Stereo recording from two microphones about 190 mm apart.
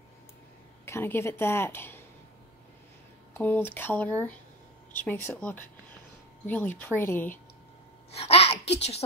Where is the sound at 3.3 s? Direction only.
10° left (ahead or behind).